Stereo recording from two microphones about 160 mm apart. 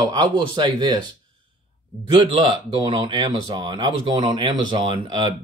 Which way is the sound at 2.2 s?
30° right (ahead or behind).